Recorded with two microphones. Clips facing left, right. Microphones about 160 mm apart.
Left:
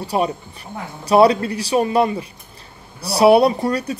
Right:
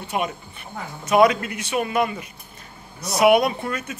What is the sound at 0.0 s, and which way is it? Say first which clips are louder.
A man's voice: left 6 dB; 35° left (ahead or behind).